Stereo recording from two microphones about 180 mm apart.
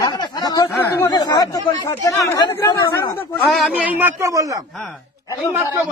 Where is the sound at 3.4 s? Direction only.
Centre (ahead or behind); by 4.6 s 20° right (ahead or behind).